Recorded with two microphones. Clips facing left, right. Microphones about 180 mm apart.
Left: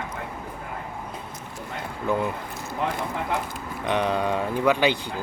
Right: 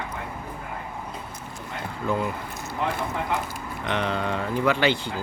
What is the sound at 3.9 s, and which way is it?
Speech, 15° left (ahead or behind).